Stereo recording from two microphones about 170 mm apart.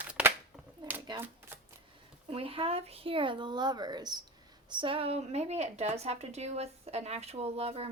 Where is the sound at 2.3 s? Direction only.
35° right (ahead or behind).